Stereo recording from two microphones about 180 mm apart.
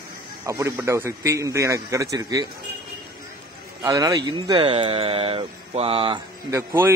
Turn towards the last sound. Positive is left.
turn(degrees=-15)  # may be behind; listen again after turning